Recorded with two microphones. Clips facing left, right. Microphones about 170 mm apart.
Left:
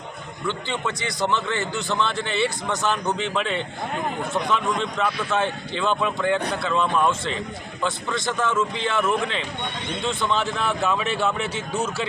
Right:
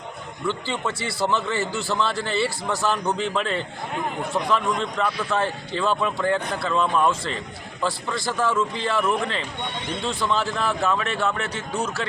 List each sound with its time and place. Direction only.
0.4 s a man's voice: 5° right (ahead or behind)